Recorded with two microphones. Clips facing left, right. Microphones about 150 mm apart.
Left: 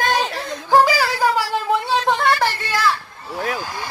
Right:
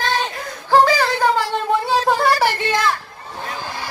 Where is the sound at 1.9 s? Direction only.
5° right (ahead or behind).